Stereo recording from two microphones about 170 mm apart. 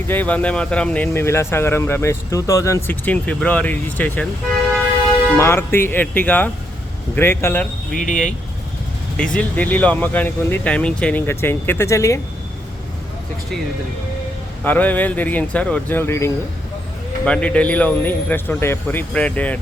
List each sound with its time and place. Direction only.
0.1 s speech: 10° left (ahead or behind)
5.4 s speech: 15° left (ahead or behind)
7.9 s speech: 50° left (ahead or behind)
9.1 s speech: 5° left (ahead or behind)
14.6 s speech: 10° left (ahead or behind)